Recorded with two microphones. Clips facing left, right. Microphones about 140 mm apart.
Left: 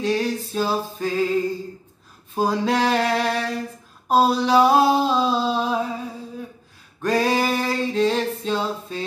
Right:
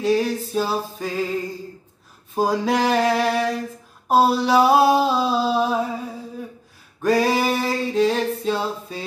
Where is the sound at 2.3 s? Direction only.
10° right (ahead or behind).